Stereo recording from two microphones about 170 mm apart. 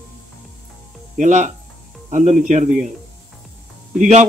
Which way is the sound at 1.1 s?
45° right (ahead or behind).